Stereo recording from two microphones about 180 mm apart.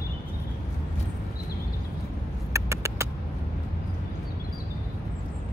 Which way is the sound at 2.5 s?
15° right (ahead or behind).